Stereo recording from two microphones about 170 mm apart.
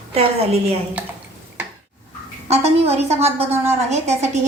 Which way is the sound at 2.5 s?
40° right (ahead or behind).